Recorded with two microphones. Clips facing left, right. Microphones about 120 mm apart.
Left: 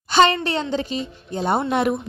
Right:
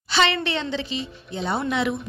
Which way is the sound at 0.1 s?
45° left (ahead or behind).